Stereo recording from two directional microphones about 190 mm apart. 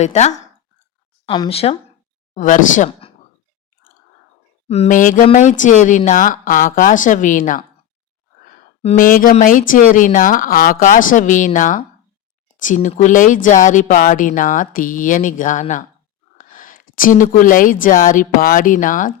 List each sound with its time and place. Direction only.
0.0 s speech: 35° left (ahead or behind)
2.3 s speech: 40° left (ahead or behind)
4.7 s speech: 40° left (ahead or behind)
8.8 s speech: 40° left (ahead or behind)